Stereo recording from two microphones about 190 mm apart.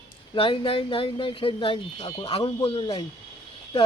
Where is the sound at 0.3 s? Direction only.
25° left (ahead or behind).